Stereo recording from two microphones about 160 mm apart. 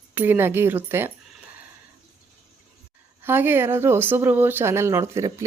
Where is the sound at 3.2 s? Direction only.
15° right (ahead or behind).